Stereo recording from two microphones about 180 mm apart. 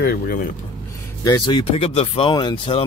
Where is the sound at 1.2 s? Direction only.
25° left (ahead or behind).